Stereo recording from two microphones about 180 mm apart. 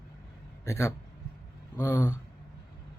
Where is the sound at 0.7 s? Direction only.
15° left (ahead or behind).